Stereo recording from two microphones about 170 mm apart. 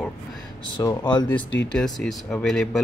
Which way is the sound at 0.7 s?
25° left (ahead or behind).